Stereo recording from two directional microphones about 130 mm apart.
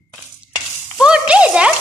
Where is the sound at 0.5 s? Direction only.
5° right (ahead or behind).